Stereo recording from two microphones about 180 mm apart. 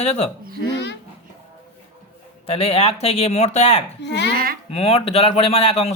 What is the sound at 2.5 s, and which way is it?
Speech, 35° left (ahead or behind).